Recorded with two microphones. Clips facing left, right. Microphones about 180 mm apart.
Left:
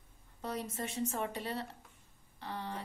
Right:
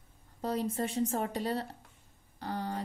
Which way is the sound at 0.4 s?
35° right (ahead or behind).